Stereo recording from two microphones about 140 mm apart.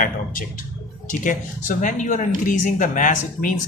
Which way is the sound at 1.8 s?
65° left (ahead or behind).